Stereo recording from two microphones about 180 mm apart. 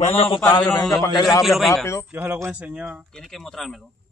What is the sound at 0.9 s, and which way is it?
Speech, 20° left (ahead or behind).